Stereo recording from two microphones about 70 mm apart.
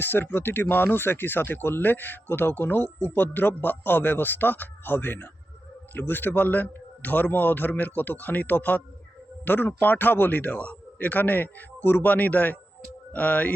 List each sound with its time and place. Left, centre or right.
0.0 s speech: left